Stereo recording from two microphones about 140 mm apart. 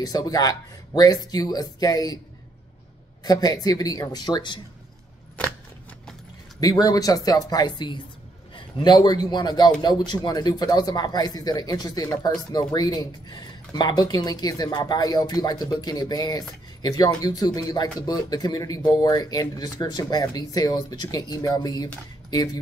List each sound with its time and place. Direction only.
0.0 s a man's voice: 25° left (ahead or behind)
3.3 s a man's voice: 25° left (ahead or behind)
6.6 s a man's voice: 25° left (ahead or behind)